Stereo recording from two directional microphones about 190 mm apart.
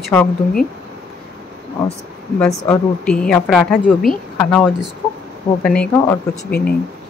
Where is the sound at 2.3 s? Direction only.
10° left (ahead or behind).